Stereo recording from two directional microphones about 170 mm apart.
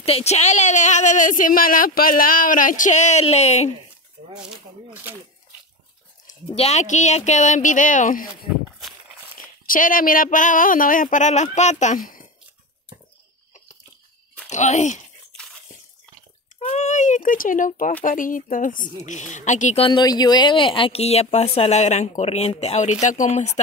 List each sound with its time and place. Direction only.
0.0 s speech: 40° left (ahead or behind)
6.2 s speech: 40° left (ahead or behind)
9.7 s speech: 55° left (ahead or behind)
14.5 s speech: 45° left (ahead or behind)
16.5 s speech: 40° left (ahead or behind)